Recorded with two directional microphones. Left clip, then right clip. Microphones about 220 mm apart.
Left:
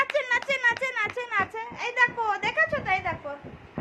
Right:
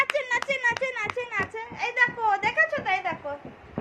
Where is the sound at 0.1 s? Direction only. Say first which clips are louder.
Left 1 dB; 20° left (ahead or behind).